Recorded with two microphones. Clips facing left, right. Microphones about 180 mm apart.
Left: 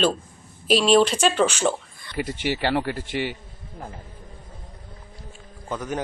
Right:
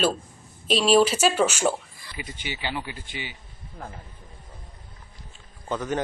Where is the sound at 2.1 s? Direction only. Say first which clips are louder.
Left 10 dB; 80° left.